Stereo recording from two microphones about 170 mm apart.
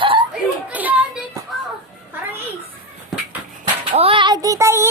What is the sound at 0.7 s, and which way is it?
Music, 10° right (ahead or behind).